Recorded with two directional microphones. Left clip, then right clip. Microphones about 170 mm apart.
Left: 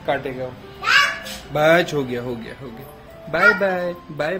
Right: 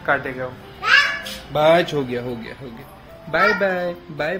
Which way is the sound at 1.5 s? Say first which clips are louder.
Even; 40° left (ahead or behind).